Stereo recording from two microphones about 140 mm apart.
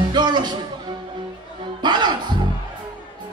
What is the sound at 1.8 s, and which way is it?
Music, 30° right (ahead or behind).